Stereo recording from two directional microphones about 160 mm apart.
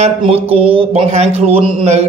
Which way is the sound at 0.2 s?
35° right (ahead or behind).